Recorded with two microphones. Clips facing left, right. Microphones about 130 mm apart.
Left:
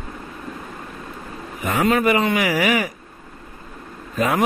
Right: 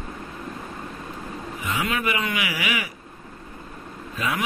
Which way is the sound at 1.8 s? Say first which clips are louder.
Left 10 dB; 40° left (ahead or behind).